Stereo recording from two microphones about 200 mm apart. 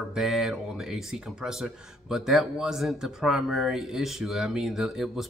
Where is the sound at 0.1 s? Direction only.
Centre (ahead or behind).